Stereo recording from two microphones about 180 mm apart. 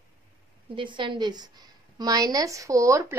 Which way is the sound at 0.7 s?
25° right (ahead or behind).